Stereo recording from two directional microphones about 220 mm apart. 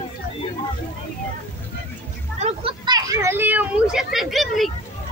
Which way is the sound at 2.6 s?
20° right (ahead or behind).